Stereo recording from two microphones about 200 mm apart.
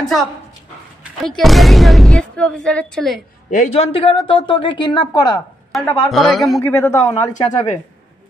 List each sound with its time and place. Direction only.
1.4 s a woman's voice: centre (ahead or behind)
3.4 s a woman's voice: 35° left (ahead or behind)
5.7 s a woman's voice: centre (ahead or behind)
6.6 s speech: 15° left (ahead or behind)
7.4 s a woman's voice: 20° left (ahead or behind)